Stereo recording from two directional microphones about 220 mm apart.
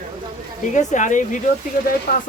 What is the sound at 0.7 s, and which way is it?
Speech, 35° left (ahead or behind).